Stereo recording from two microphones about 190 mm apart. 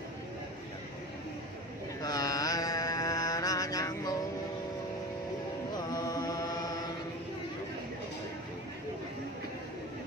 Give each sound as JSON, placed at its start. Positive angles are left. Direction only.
{"t": 2.0, "sound": "mantra", "side_deg": 20}
{"t": 5.9, "sound": "mantra", "side_deg": 20}